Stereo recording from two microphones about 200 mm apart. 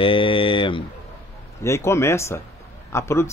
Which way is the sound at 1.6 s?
15° left (ahead or behind).